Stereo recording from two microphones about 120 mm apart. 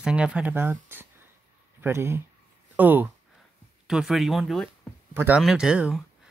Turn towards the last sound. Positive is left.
turn(degrees=-10)  # may be behind; listen again after turning